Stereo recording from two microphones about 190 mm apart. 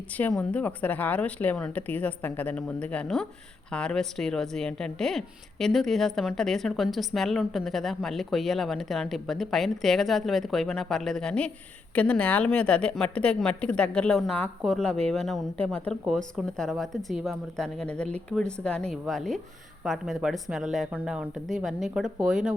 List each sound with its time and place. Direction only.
0.2 s a woman's voice: 5° left (ahead or behind)